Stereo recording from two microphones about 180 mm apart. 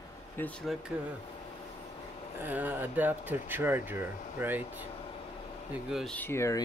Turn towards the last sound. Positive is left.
turn(degrees=15)  # may be behind; listen again after turning